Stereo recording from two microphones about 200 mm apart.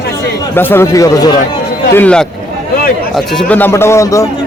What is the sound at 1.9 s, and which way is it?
A man's voice, 5° left (ahead or behind).